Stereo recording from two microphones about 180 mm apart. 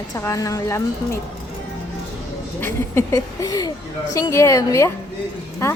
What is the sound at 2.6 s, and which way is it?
Speech, 15° left (ahead or behind).